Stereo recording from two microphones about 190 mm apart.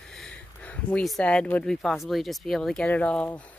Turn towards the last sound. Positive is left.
turn(degrees=5)  # may be behind; listen again after turning